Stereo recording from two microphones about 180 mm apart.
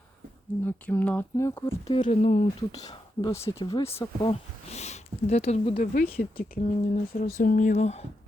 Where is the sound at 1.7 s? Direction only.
30° left (ahead or behind).